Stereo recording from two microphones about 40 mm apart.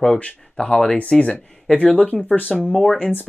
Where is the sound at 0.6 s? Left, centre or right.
Centre.